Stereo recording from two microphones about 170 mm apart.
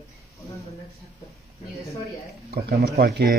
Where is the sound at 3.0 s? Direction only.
80° right.